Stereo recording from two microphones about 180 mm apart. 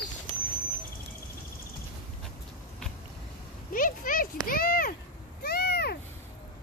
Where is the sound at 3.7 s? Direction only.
50° left (ahead or behind).